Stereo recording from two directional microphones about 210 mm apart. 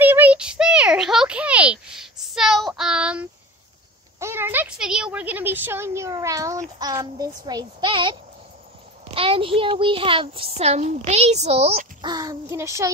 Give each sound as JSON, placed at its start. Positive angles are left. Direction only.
{"t": 0.0, "sound": "a sound", "side_deg": -10}
{"t": 6.8, "sound": "a child's voice", "side_deg": -20}
{"t": 12.1, "sound": "a child's voice", "side_deg": -20}